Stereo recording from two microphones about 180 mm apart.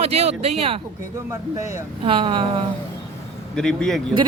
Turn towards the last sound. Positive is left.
turn(degrees=5)  # may be behind; listen again after turning